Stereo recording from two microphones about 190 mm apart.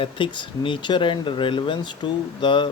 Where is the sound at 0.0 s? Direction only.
25° left (ahead or behind).